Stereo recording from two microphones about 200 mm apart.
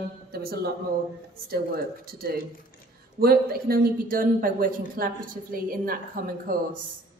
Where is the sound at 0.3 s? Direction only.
50° right (ahead or behind).